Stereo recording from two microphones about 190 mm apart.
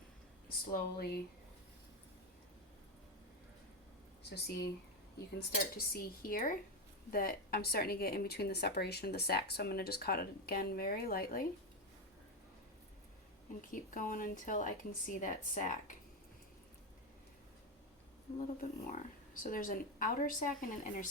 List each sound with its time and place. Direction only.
0.4 s speech: 55° left (ahead or behind)
4.3 s speech: 60° left (ahead or behind)
13.6 s speech: 45° left (ahead or behind)
18.6 s speech: 45° left (ahead or behind)